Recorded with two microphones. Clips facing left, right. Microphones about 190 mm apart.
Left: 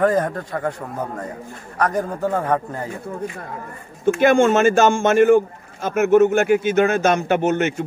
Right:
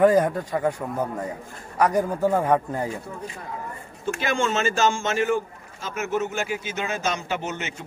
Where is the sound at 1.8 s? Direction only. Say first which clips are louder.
Even; 10° right (ahead or behind).